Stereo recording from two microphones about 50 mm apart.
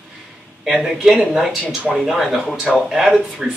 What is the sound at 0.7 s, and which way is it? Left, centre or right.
A man's voice, centre.